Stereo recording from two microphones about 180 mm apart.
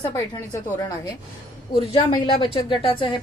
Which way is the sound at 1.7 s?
30° left (ahead or behind).